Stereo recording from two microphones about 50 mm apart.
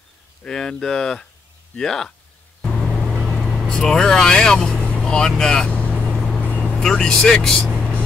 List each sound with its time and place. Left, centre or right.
0.4 s speech: centre
2.7 s vehicle: centre
3.6 s speech: centre
4.8 s vehicle: centre
6.0 s vehicle: centre
6.8 s speech: centre